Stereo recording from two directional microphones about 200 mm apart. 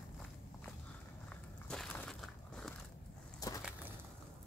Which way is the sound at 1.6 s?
5° left (ahead or behind).